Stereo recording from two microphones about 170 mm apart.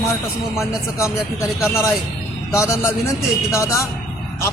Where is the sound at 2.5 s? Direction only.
15° left (ahead or behind).